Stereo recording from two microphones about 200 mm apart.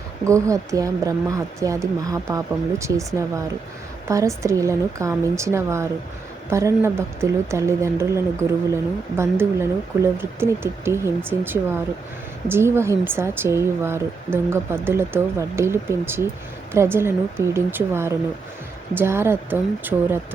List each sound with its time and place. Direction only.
0.3 s speech: 15° right (ahead or behind)